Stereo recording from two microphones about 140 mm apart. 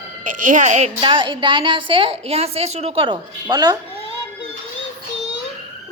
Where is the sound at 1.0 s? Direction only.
35° right (ahead or behind).